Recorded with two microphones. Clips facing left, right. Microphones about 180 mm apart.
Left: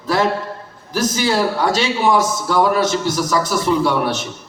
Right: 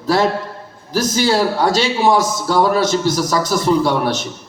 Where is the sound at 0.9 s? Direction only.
35° right (ahead or behind).